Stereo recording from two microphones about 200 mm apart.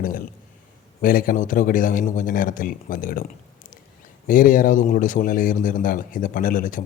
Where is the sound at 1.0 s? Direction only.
45° left (ahead or behind).